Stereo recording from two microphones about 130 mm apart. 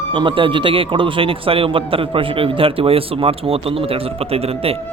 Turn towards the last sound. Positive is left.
turn(degrees=-50)  # may be behind; listen again after turning